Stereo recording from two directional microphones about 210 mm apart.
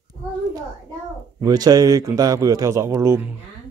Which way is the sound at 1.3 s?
15° right (ahead or behind).